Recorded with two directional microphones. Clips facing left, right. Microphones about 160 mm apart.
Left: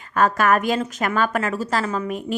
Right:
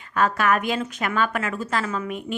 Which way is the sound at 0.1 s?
45° left (ahead or behind).